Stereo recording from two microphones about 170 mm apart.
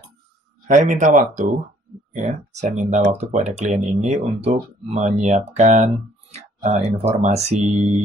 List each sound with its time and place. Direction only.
0.7 s speech: 45° right (ahead or behind)